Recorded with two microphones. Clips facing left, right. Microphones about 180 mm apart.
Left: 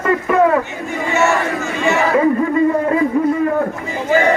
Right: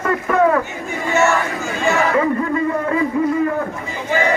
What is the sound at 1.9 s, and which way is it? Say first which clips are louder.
Chatter: left 3 dB; 20° left (ahead or behind).